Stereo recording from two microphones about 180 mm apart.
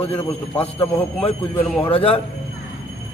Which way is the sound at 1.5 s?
10° left (ahead or behind).